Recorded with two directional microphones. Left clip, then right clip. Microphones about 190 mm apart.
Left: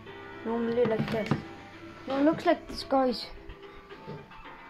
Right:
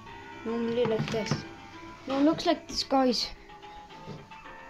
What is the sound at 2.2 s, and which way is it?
Speech, centre (ahead or behind).